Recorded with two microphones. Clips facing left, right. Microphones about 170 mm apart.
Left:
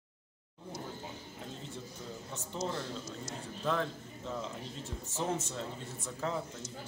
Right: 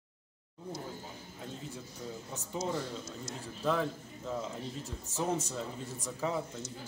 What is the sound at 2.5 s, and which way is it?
Speech, 5° right (ahead or behind).